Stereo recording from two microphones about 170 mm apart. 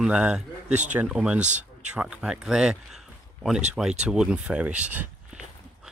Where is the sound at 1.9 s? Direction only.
5° right (ahead or behind).